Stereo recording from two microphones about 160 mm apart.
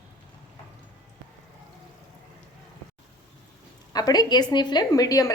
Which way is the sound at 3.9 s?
25° left (ahead or behind).